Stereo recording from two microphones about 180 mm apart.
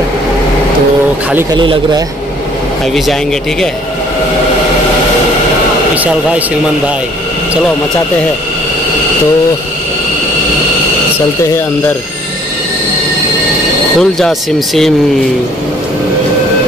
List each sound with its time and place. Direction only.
1.5 s a man's voice: 25° right (ahead or behind)
13.9 s speech: centre (ahead or behind)